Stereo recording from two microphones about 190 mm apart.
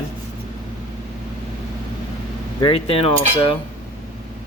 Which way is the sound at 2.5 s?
30° left (ahead or behind).